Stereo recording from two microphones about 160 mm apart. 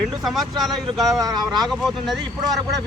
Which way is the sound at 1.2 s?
20° right (ahead or behind).